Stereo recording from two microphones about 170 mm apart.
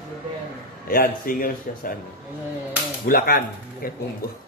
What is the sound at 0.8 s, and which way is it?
A man's voice, 60° left (ahead or behind).